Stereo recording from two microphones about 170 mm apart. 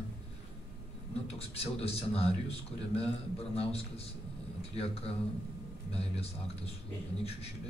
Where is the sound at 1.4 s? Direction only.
35° left (ahead or behind).